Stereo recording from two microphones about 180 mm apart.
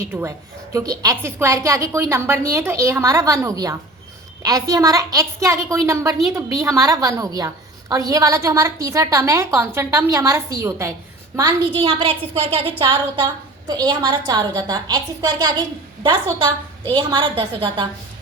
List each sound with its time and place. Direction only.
0.0 s a woman's voice: 15° right (ahead or behind)
16.8 s a woman's voice: 30° right (ahead or behind)